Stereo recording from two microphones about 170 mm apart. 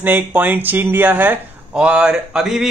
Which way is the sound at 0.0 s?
10° right (ahead or behind).